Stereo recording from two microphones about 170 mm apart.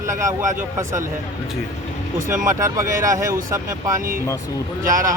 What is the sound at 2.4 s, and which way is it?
Speech, 20° right (ahead or behind).